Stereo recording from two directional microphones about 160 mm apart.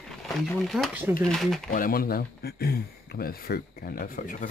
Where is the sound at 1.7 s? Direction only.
65° left (ahead or behind).